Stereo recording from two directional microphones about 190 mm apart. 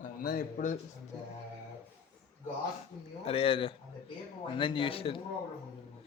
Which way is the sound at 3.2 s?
30° left (ahead or behind).